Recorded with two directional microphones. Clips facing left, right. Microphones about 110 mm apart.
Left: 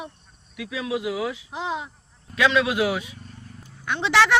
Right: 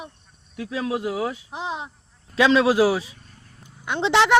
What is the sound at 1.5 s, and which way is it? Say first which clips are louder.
Speech: left 1 dB; 20° right (ahead or behind).